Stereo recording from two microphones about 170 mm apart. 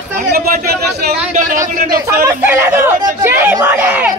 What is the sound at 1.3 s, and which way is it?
Speech, 50° right (ahead or behind).